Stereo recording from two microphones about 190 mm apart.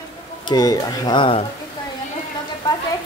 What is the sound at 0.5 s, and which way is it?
Speech, 20° left (ahead or behind).